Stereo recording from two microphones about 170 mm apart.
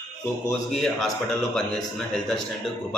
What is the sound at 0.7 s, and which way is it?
A man's voice, centre (ahead or behind).